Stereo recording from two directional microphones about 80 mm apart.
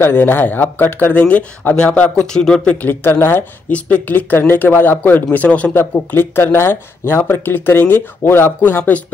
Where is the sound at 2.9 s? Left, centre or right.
Left.